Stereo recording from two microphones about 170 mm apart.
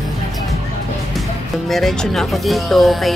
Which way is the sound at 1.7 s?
Centre (ahead or behind).